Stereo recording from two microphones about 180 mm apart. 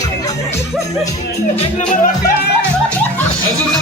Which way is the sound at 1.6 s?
45° left (ahead or behind).